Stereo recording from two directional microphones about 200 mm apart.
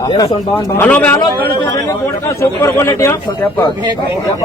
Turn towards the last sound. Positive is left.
turn(degrees=15)  # may be behind; listen again after turning